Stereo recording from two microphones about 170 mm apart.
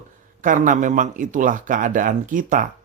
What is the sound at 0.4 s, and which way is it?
Speech, 50° right (ahead or behind).